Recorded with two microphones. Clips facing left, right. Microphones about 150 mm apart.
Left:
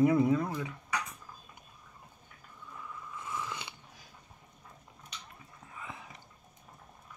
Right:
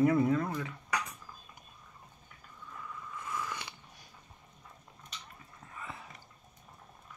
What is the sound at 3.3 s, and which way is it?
Biting, 20° left (ahead or behind).